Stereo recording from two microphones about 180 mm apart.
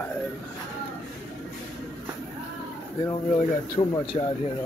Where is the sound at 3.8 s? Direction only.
30° left (ahead or behind).